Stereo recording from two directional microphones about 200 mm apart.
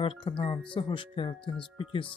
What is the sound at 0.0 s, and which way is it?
Speech, 25° left (ahead or behind).